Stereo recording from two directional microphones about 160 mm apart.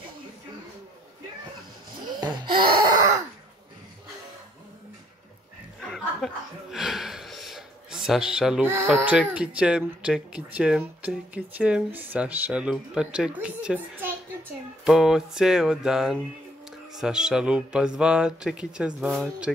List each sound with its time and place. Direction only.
2.0 s gasp: 25° right (ahead or behind)
5.8 s chuckle: centre (ahead or behind)
9.0 s speech: 10° right (ahead or behind)